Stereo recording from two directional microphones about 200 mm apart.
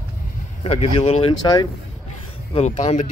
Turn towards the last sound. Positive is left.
turn(degrees=35)  # may be behind; listen again after turning